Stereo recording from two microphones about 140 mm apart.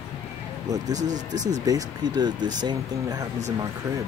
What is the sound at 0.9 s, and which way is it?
Speech, 25° right (ahead or behind).